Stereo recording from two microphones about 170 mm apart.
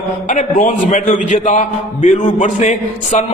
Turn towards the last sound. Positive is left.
turn(degrees=45)  # may be behind; listen again after turning